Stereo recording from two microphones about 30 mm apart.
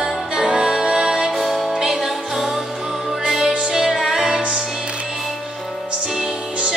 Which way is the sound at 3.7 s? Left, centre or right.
Centre.